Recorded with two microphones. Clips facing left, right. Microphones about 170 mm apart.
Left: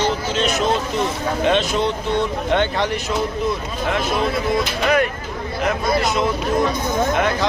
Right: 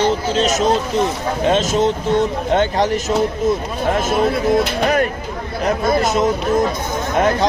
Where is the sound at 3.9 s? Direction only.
45° right (ahead or behind).